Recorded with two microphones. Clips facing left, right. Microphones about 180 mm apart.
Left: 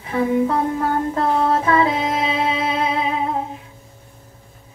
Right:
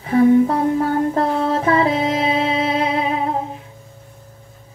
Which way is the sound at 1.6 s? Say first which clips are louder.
Right 1 dB; 35° right (ahead or behind).